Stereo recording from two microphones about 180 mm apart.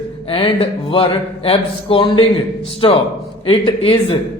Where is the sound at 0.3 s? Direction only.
30° left (ahead or behind).